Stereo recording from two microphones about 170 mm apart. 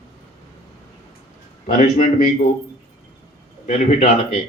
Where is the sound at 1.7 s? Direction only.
55° left (ahead or behind).